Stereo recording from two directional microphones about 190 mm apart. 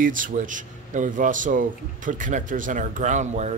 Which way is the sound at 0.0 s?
45° right (ahead or behind).